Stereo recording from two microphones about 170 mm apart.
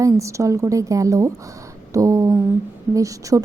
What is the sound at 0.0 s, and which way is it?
A woman's voice, 15° right (ahead or behind).